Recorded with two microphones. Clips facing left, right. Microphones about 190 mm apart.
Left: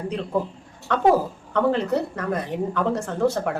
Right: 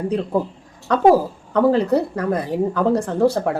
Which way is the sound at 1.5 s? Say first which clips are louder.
Right 5 dB; 35° right (ahead or behind).